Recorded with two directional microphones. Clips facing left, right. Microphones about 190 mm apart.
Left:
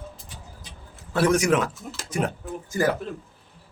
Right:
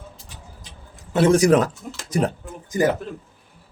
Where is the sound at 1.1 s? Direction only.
25° right (ahead or behind).